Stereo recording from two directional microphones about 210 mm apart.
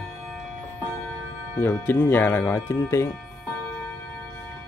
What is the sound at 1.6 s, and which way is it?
Speech, 10° left (ahead or behind).